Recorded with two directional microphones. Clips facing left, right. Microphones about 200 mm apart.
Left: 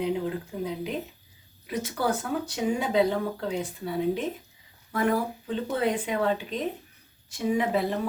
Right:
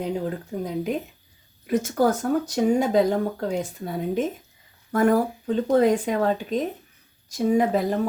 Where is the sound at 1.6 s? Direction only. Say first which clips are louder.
Right 7 dB; 45° right (ahead or behind).